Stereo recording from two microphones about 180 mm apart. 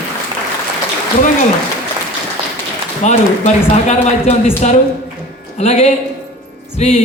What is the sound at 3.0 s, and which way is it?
Speech, 40° left (ahead or behind).